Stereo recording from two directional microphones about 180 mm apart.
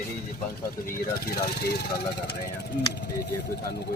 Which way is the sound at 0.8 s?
55° left (ahead or behind).